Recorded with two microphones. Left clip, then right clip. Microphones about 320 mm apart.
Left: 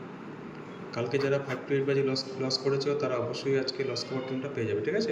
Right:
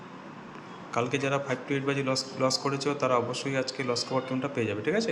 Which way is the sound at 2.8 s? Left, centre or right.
Centre.